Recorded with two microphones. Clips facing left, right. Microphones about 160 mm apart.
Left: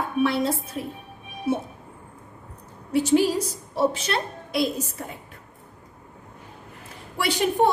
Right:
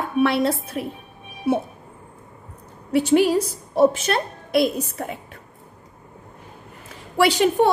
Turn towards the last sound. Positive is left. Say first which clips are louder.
# right 5 dB
turn(degrees=-90)